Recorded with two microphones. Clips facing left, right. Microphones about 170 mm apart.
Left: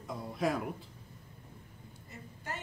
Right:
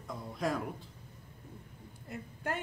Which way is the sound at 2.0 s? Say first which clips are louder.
Right 7 dB; 55° right (ahead or behind).